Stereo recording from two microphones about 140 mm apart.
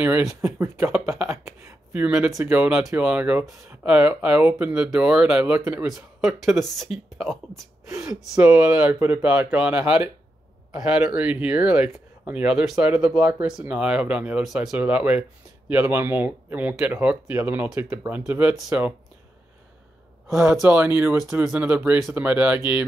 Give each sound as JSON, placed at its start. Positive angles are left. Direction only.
{"t": 0.6, "sound": "speech", "side_deg": -20}
{"t": 1.9, "sound": "speech", "side_deg": -5}
{"t": 2.2, "sound": "speech", "side_deg": -15}
{"t": 20.2, "sound": "speech", "side_deg": -5}